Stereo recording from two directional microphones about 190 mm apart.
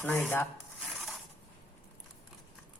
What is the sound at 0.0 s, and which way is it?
Rub, 10° left (ahead or behind).